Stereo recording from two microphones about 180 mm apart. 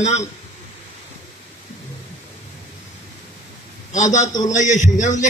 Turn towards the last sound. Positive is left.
turn(degrees=45)  # may be behind; listen again after turning